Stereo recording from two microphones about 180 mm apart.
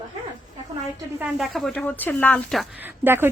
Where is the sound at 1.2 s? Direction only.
Centre (ahead or behind).